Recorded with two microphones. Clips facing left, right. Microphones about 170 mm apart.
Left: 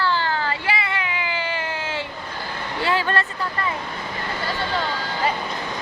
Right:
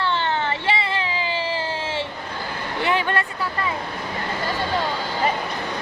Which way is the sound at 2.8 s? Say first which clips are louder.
Even; 20° right (ahead or behind).